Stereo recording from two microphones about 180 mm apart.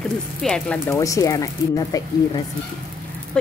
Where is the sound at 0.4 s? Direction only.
5° left (ahead or behind).